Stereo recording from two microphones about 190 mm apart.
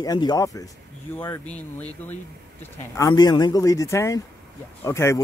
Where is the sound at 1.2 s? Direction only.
10° left (ahead or behind).